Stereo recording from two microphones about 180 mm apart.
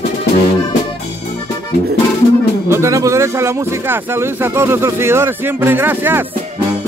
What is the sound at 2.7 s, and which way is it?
Speech, 15° right (ahead or behind).